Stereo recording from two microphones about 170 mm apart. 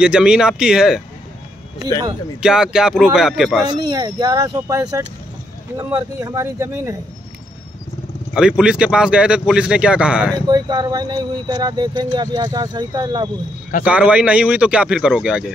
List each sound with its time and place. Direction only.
0.0 s speech: 5° right (ahead or behind)
2.4 s speech: 5° right (ahead or behind)
3.6 s speech: 25° right (ahead or behind)
8.4 s speech: 5° right (ahead or behind)
10.3 s speech: 25° right (ahead or behind)
13.8 s speech: 5° right (ahead or behind)